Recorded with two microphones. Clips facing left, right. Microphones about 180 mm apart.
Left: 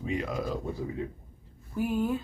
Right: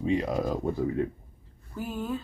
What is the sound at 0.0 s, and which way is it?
Speech, 30° right (ahead or behind).